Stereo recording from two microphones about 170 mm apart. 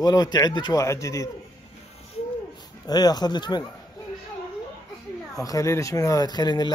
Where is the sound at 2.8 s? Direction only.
25° left (ahead or behind).